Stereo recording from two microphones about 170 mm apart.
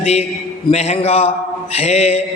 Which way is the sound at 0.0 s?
40° left (ahead or behind).